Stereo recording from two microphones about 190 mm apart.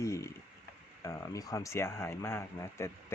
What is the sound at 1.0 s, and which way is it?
Speech, 20° left (ahead or behind).